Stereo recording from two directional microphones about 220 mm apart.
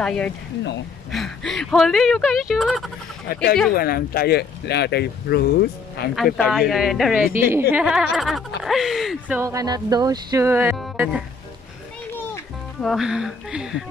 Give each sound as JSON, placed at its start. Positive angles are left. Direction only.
{"t": 0.0, "sound": "speech", "side_deg": 5}
{"t": 3.3, "sound": "speech", "side_deg": 40}
{"t": 6.1, "sound": "speech", "side_deg": 0}
{"t": 9.4, "sound": "speech", "side_deg": -15}
{"t": 12.8, "sound": "speech", "side_deg": 0}